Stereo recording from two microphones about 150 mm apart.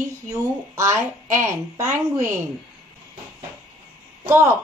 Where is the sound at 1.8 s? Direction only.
55° right (ahead or behind).